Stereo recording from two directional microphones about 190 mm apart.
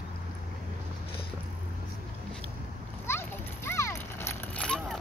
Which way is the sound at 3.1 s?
15° left (ahead or behind).